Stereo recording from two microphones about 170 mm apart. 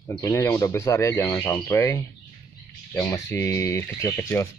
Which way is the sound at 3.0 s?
15° left (ahead or behind).